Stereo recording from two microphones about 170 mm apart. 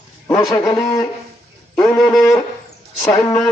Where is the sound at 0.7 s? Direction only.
20° left (ahead or behind).